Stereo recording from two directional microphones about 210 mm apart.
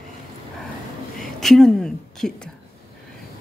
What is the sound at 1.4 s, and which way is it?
A woman's voice, centre (ahead or behind).